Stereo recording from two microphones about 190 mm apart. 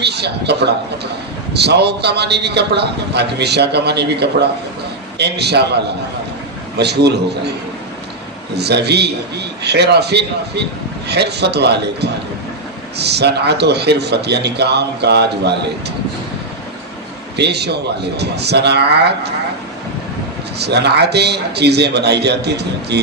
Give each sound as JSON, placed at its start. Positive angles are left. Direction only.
{"t": 0.0, "sound": "a man's voice", "side_deg": -60}
{"t": 8.5, "sound": "a man's voice", "side_deg": -60}
{"t": 17.3, "sound": "a man's voice", "side_deg": -60}
{"t": 20.6, "sound": "a man's voice", "side_deg": -60}